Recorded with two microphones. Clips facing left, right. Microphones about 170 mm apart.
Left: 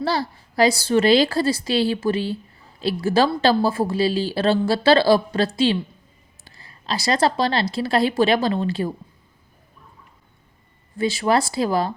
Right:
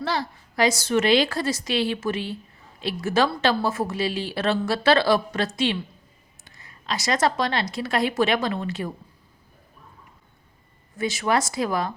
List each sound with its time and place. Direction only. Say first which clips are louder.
0.0 s a woman's voice: left 4 dB; 35° left (ahead or behind)
10.9 s a woman's voice: left 4 dB; 30° left (ahead or behind)